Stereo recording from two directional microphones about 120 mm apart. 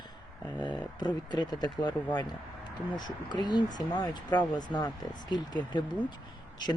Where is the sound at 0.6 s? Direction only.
35° left (ahead or behind).